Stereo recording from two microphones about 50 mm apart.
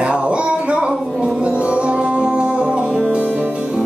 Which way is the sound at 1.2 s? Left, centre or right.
Right.